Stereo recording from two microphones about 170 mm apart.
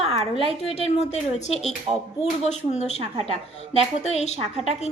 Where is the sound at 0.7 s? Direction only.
35° left (ahead or behind).